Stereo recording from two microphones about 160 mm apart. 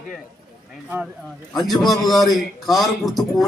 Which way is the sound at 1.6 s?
Centre (ahead or behind).